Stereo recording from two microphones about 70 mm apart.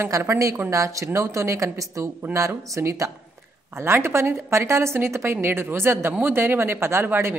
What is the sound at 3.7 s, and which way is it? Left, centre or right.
A woman's voice, right.